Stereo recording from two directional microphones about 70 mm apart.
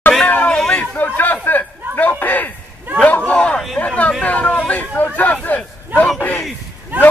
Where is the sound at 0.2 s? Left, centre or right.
Centre.